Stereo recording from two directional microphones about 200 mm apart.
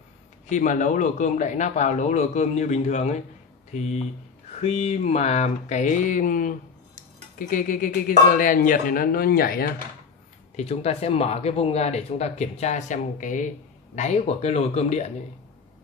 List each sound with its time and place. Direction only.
0.5 s speech: 40° left (ahead or behind)
10.5 s speech: 30° left (ahead or behind)